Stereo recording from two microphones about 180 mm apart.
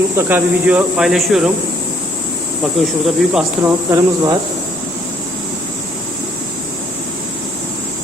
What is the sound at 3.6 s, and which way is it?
Speech, 20° right (ahead or behind).